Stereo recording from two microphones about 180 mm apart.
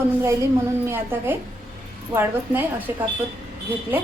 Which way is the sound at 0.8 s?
10° right (ahead or behind).